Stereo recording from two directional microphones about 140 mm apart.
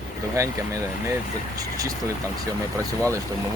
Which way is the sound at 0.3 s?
20° right (ahead or behind).